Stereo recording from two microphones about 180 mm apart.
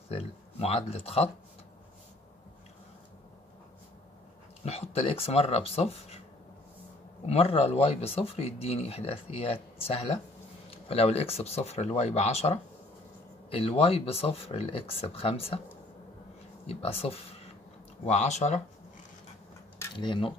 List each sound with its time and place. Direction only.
0.1 s speech: 35° left (ahead or behind)
4.6 s speech: 35° left (ahead or behind)
7.2 s speech: 35° left (ahead or behind)
16.6 s speech: 35° left (ahead or behind)
19.8 s speech: 25° left (ahead or behind)